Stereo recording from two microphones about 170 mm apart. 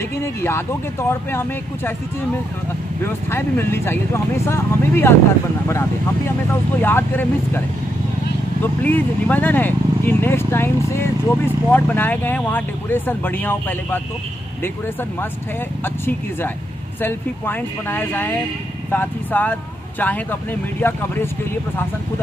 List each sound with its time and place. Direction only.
0.2 s speech: 15° left (ahead or behind)
3.0 s speech: 15° left (ahead or behind)
8.8 s speech: 10° left (ahead or behind)
15.8 s speech: 10° left (ahead or behind)